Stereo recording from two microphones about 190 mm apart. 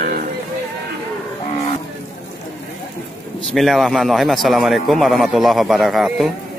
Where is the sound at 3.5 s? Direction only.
Centre (ahead or behind).